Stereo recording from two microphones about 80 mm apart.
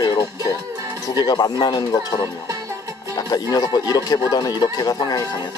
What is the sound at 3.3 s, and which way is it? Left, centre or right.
Speech, left.